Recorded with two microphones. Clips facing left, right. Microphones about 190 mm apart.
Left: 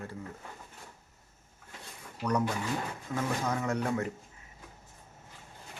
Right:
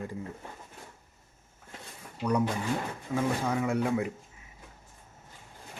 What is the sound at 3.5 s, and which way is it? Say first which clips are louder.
Speech: right 3 dB; 10° right (ahead or behind).